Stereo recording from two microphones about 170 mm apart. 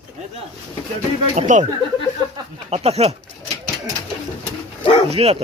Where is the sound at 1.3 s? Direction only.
45° right (ahead or behind).